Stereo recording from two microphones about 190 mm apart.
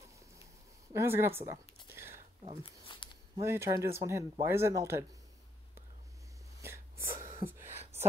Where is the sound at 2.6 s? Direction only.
25° left (ahead or behind).